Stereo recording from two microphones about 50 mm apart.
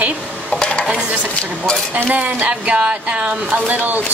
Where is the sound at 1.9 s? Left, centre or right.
Right.